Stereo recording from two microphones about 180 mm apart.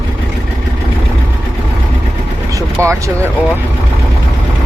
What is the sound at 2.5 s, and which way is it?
Vehicle, 15° right (ahead or behind).